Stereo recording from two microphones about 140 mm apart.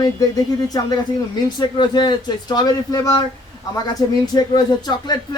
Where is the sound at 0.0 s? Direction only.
25° left (ahead or behind).